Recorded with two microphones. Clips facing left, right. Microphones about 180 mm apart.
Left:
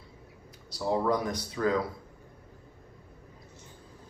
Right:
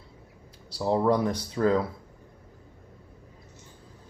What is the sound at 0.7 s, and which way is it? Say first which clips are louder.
Speech: right 4 dB; 30° right (ahead or behind).